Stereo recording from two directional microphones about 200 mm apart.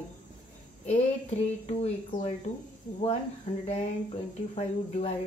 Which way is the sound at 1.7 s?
30° left (ahead or behind).